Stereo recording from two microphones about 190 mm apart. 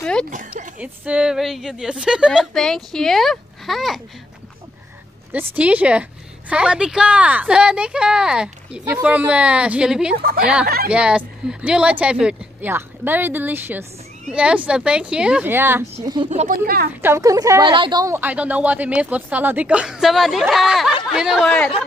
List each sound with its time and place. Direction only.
0.0 s a sound: 5° left (ahead or behind)
0.7 s speech: 5° right (ahead or behind)
5.3 s a woman's voice: 10° right (ahead or behind)
10.1 s speech: 50° right (ahead or behind)
10.4 s a woman's voice: 5° right (ahead or behind); by 16.3 s 20° right (ahead or behind)
16.3 s speech: 40° right (ahead or behind)
17.0 s a woman's voice: 15° right (ahead or behind); by 21.6 s centre (ahead or behind)